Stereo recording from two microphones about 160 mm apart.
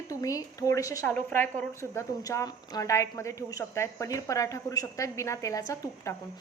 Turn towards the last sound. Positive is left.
turn(degrees=20)  # may be behind; listen again after turning